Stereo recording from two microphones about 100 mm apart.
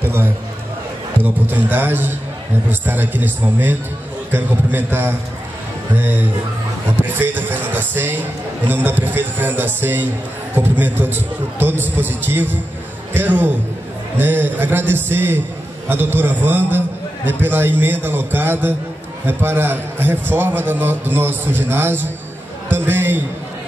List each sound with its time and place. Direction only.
0.0 s a man's voice: 20° right (ahead or behind)